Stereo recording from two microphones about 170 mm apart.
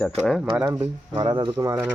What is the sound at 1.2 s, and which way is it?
Speech, 25° right (ahead or behind).